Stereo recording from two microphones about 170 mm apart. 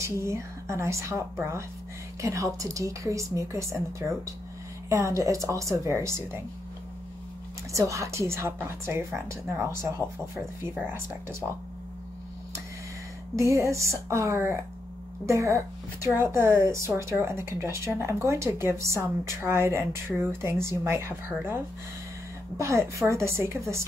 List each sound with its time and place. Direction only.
0.0 s speech: 15° right (ahead or behind)
7.7 s speech: 20° right (ahead or behind)
13.4 s speech: 15° right (ahead or behind)
22.6 s speech: 15° right (ahead or behind)